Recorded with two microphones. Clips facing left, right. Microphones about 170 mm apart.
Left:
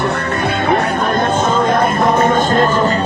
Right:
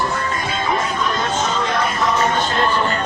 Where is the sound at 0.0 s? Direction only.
65° left (ahead or behind).